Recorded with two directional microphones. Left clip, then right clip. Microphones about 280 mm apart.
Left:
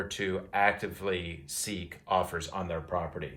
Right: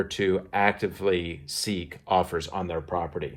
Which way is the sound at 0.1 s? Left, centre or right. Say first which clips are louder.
Right 6 dB; right.